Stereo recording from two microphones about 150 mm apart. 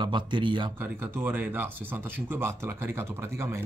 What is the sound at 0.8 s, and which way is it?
Speech, 15° right (ahead or behind).